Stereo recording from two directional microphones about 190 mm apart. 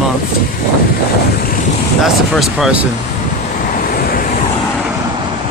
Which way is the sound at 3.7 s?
50° left (ahead or behind).